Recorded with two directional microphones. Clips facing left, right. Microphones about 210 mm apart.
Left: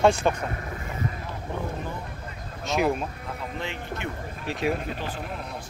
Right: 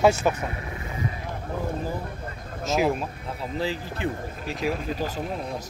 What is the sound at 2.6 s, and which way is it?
Speech, centre (ahead or behind).